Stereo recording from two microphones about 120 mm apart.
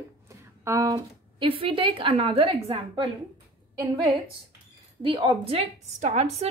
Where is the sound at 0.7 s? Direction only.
30° right (ahead or behind).